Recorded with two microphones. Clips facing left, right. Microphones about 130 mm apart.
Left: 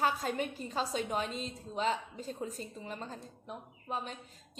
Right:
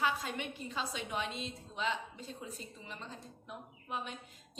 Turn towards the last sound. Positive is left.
turn(degrees=35)  # may be behind; listen again after turning